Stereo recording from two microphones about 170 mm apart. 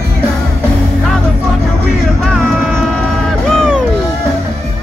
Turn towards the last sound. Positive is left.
turn(degrees=0)  # may be behind; listen again after turning